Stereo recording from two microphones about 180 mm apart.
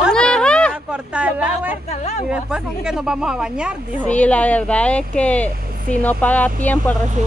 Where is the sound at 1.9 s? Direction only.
40° left (ahead or behind).